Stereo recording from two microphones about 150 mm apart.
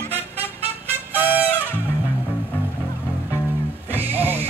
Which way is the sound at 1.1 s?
10° right (ahead or behind).